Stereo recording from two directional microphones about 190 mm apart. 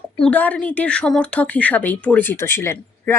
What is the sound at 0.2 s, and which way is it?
Speech, 10° left (ahead or behind).